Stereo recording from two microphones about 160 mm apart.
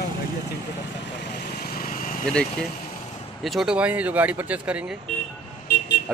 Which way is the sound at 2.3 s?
5° left (ahead or behind).